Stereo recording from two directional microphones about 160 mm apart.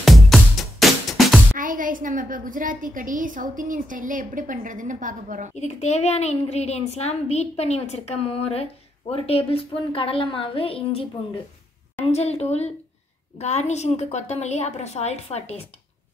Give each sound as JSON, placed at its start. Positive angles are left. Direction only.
{"t": 0.0, "sound": "music", "side_deg": 0}
{"t": 1.6, "sound": "a woman's voice", "side_deg": -60}
{"t": 5.5, "sound": "a woman's voice", "side_deg": 45}
{"t": 12.1, "sound": "a woman's voice", "side_deg": 40}